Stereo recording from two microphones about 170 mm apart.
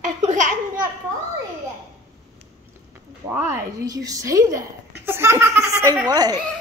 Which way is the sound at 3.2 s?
15° right (ahead or behind).